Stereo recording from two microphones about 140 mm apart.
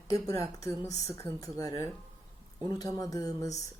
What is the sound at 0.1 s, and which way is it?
Speech, 25° left (ahead or behind).